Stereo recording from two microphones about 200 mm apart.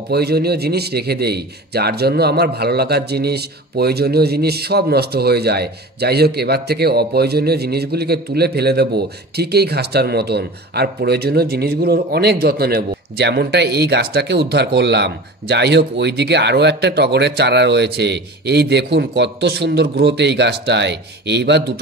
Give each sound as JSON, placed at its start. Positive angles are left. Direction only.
{"t": 0.1, "sound": "a man's voice", "side_deg": -55}